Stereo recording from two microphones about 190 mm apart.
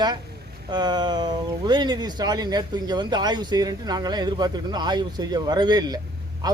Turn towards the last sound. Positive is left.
turn(degrees=-20)  # may be behind; listen again after turning